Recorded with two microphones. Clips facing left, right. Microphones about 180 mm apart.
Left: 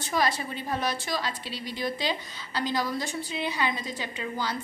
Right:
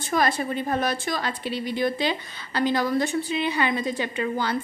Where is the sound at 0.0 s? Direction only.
50° right (ahead or behind).